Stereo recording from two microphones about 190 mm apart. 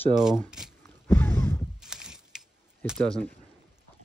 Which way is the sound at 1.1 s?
10° left (ahead or behind).